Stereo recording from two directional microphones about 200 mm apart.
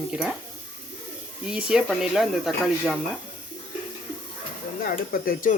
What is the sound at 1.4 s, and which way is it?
Speech, 5° right (ahead or behind).